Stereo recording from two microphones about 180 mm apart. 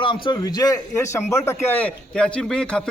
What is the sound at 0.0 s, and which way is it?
A man's voice, 25° left (ahead or behind).